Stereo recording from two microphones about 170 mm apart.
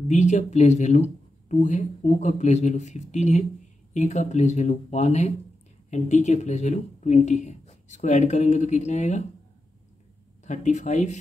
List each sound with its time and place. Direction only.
0.1 s speech: 45° left (ahead or behind)
10.4 s speech: 45° left (ahead or behind)